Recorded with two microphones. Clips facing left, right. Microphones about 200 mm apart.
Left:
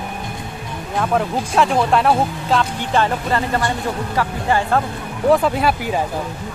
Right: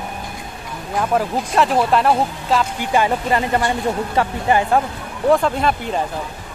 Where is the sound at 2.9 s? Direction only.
15° right (ahead or behind).